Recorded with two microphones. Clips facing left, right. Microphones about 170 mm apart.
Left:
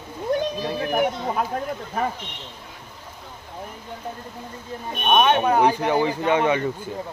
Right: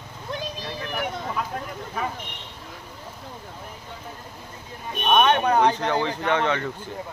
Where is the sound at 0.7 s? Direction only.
45° left (ahead or behind).